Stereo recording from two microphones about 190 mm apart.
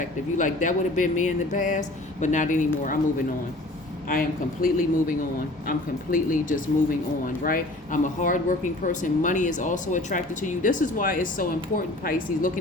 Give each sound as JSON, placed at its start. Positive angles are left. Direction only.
{"t": 0.0, "sound": "speech", "side_deg": 40}
{"t": 4.1, "sound": "speech", "side_deg": 50}